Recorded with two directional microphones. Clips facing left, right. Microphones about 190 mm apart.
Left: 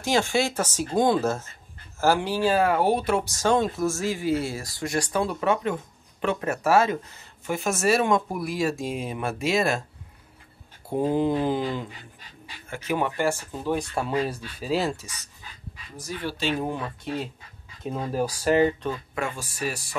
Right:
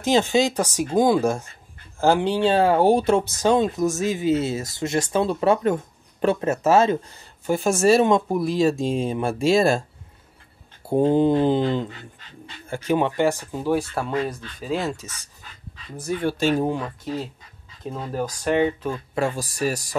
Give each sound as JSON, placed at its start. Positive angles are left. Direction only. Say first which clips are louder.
{"t": 0.0, "sound": "speech", "louder": "right 4 dB", "side_deg": -20}
{"t": 6.2, "sound": "speech", "louder": "right 5 dB", "side_deg": -25}
{"t": 10.9, "sound": "speech", "louder": "right 5 dB", "side_deg": -30}
{"t": 11.9, "sound": "dog", "louder": "right 4 dB", "side_deg": 10}
{"t": 12.6, "sound": "speech", "louder": "right 7 dB", "side_deg": -30}
{"t": 12.9, "sound": "speech", "louder": "right 4 dB", "side_deg": -20}
{"t": 14.1, "sound": "speech", "louder": "right 1 dB", "side_deg": 10}
{"t": 16.0, "sound": "speech", "louder": "right 7 dB", "side_deg": -55}
{"t": 16.6, "sound": "speech", "louder": "right 5 dB", "side_deg": -15}
{"t": 17.8, "sound": "speech", "louder": "left 1 dB", "side_deg": 10}
{"t": 19.1, "sound": "speech", "louder": "right 6 dB", "side_deg": -35}